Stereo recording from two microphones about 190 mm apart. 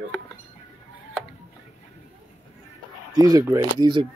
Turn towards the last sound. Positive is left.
turn(degrees=-25)  # may be behind; listen again after turning